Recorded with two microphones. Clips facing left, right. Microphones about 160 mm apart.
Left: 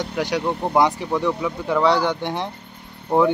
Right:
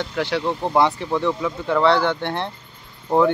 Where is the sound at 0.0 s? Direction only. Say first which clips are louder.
Even; 15° left (ahead or behind).